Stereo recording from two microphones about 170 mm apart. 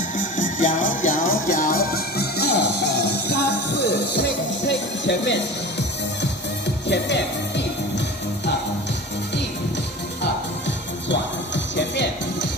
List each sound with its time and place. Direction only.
0.4 s music: 50° left (ahead or behind); by 5.4 s 90° left
6.9 s music: 90° left
11.1 s music: 90° left